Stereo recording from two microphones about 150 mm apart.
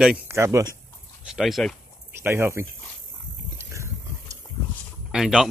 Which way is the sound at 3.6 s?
20° right (ahead or behind).